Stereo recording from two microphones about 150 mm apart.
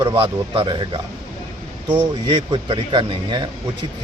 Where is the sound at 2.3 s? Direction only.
30° right (ahead or behind).